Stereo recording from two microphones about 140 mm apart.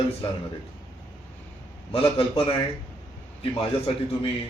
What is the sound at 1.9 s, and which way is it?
Speech, 40° left (ahead or behind).